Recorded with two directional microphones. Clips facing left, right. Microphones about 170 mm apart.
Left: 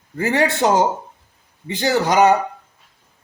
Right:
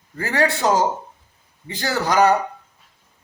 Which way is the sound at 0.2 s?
20° left (ahead or behind).